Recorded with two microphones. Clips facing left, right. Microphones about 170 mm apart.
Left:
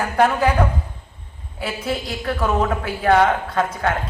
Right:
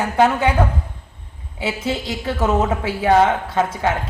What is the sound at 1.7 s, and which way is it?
A man's voice, 25° right (ahead or behind).